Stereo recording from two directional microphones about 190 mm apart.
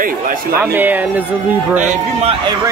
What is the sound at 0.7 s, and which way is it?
Speech, 10° right (ahead or behind).